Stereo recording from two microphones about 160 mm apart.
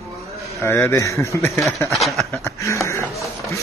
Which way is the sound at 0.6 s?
15° left (ahead or behind).